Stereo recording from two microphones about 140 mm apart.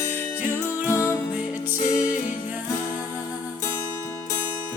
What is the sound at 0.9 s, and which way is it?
Music, 20° left (ahead or behind).